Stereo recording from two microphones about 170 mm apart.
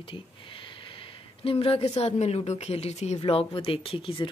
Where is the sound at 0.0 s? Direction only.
30° left (ahead or behind).